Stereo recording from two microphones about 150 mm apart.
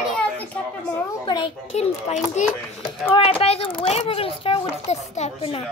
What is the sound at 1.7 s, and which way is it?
A child's voice, 45° left (ahead or behind).